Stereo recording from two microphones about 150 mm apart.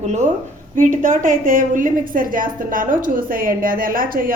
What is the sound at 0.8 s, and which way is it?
A woman's voice, 60° right (ahead or behind).